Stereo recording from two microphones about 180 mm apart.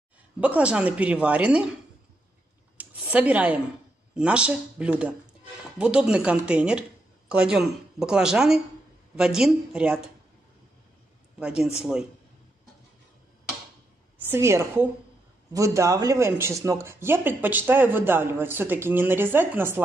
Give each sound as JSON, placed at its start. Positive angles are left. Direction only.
{"t": 0.4, "sound": "speech", "side_deg": -5}
{"t": 2.8, "sound": "a sound", "side_deg": -10}
{"t": 4.1, "sound": "speech", "side_deg": -5}
{"t": 11.3, "sound": "speech", "side_deg": -5}
{"t": 14.3, "sound": "speech", "side_deg": -15}